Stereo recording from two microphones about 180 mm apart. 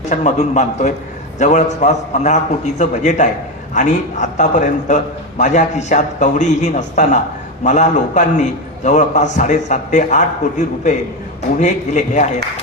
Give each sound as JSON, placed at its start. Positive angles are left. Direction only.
{"t": 0.1, "sound": "a man's voice", "side_deg": 40}